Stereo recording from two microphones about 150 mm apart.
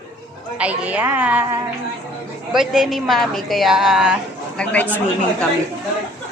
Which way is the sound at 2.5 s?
5° right (ahead or behind).